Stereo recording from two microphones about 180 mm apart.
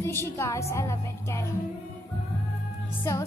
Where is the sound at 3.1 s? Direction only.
15° left (ahead or behind).